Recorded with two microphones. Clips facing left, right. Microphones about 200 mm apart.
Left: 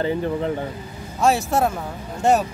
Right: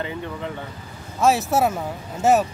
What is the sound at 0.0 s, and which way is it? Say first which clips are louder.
Speech: left 7 dB; 35° left (ahead or behind).